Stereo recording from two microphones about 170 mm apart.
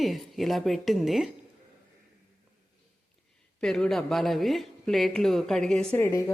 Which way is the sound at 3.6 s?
Centre (ahead or behind).